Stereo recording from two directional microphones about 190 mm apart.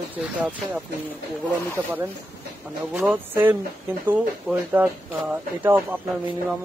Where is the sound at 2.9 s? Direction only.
10° right (ahead or behind).